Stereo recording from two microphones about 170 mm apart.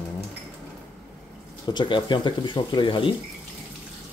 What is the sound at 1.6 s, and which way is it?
Speech, 25° left (ahead or behind).